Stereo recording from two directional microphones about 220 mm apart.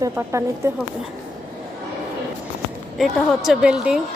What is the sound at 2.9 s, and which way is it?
A woman's voice, centre (ahead or behind).